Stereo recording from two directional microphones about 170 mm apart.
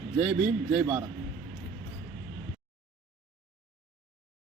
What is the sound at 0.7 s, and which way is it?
Speech, 5° right (ahead or behind).